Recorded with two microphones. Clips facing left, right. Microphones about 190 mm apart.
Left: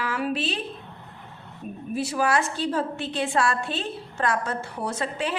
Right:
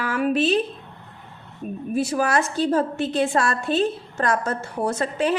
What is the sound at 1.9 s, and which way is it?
A woman's voice, 45° right (ahead or behind).